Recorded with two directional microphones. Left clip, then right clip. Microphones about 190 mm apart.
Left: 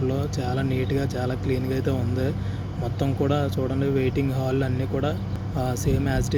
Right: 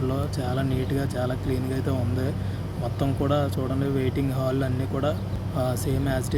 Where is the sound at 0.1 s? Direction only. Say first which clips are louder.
Left 1 dB; centre (ahead or behind).